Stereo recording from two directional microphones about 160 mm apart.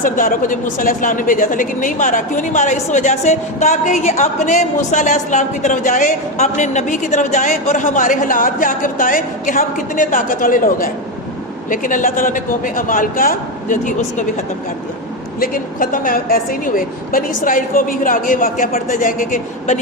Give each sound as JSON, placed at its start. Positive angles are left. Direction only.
{"t": 0.0, "sound": "speech", "side_deg": 60}
{"t": 15.4, "sound": "speech", "side_deg": 60}